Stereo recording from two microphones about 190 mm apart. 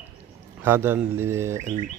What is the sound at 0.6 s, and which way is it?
Speech, 10° right (ahead or behind).